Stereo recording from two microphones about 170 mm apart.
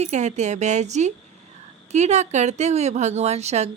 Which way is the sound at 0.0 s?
45° right (ahead or behind).